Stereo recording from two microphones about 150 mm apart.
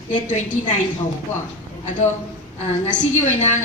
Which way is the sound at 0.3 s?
60° left (ahead or behind).